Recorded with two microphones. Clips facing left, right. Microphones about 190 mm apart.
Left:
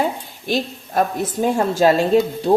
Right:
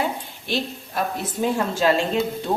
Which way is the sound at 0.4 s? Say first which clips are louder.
Left 5 dB; 45° left (ahead or behind).